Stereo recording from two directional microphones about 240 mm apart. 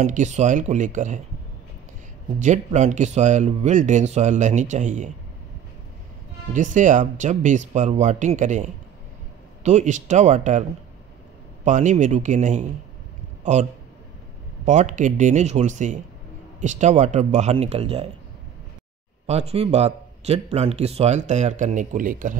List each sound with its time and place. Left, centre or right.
0.0 s speech: right
2.3 s speech: right
6.5 s speech: right
11.6 s speech: right
13.4 s a sound: right
14.6 s speech: right
19.2 s speech: right